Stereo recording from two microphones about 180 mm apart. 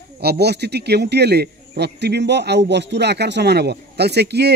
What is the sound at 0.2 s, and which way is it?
Speech, 65° right (ahead or behind).